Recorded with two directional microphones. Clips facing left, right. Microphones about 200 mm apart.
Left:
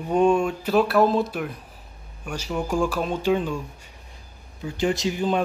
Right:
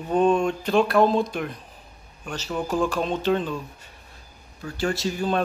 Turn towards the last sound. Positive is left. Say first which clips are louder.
# left 1 dB
turn(degrees=15)  # may be behind; listen again after turning